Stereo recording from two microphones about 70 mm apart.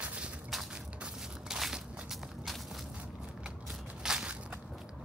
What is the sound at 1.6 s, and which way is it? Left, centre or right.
Walk, centre.